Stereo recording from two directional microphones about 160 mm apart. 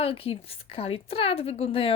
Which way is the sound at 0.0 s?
35° left (ahead or behind).